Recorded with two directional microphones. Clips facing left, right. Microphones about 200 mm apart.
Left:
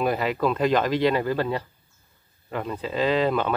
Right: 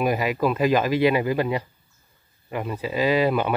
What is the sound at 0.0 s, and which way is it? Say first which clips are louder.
Speech: right 1 dB; 10° right (ahead or behind).